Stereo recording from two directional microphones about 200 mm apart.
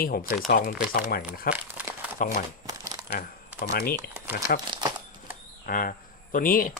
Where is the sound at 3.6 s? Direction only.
50° left (ahead or behind).